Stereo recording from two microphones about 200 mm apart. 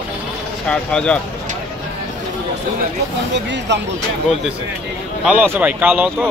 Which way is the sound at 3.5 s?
60° right (ahead or behind).